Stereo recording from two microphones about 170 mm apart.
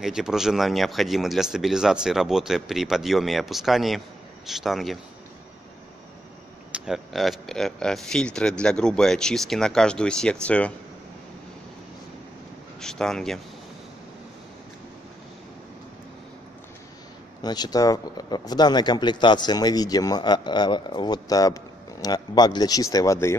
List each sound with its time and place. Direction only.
0.0 s speech: 5° right (ahead or behind)
6.7 s speech: centre (ahead or behind)
12.8 s speech: 5° left (ahead or behind)
17.4 s speech: 25° left (ahead or behind)